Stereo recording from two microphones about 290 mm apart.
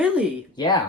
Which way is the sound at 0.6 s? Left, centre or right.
Centre.